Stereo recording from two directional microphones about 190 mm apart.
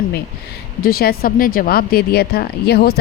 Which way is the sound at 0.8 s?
50° left (ahead or behind).